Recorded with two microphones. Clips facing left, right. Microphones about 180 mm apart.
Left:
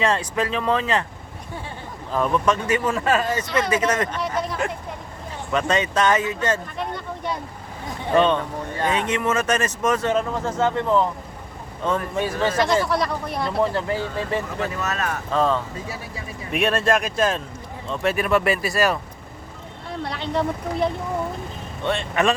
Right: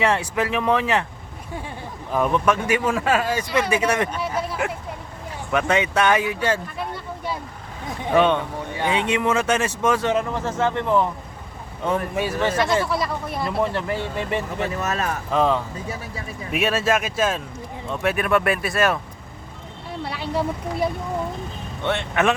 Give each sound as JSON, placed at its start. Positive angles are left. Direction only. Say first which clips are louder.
{"t": 0.0, "sound": "speech", "louder": "right 1 dB", "side_deg": -10}
{"t": 2.1, "sound": "speech", "louder": "right 1 dB", "side_deg": -10}
{"t": 10.3, "sound": "speech", "louder": "left 1 dB", "side_deg": 10}
{"t": 11.9, "sound": "speech", "louder": "even", "side_deg": -10}
{"t": 13.9, "sound": "speech", "louder": "even", "side_deg": -20}
{"t": 16.5, "sound": "speech", "louder": "left 1 dB", "side_deg": 0}
{"t": 20.1, "sound": "speech", "louder": "left 1 dB", "side_deg": -5}